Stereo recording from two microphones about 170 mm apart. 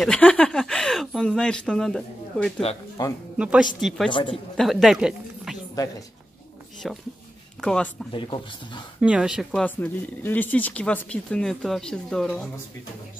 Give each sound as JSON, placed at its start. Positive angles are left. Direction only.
{"t": 0.0, "sound": "speech", "side_deg": 5}
{"t": 3.0, "sound": "speech", "side_deg": 25}
{"t": 3.3, "sound": "speech", "side_deg": -5}
{"t": 4.1, "sound": "speech", "side_deg": 30}
{"t": 4.6, "sound": "speech", "side_deg": 0}
{"t": 6.8, "sound": "speech", "side_deg": 0}
{"t": 8.1, "sound": "speech", "side_deg": 30}
{"t": 9.0, "sound": "speech", "side_deg": -5}